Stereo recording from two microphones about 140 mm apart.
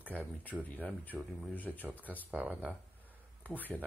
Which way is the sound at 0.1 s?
10° left (ahead or behind).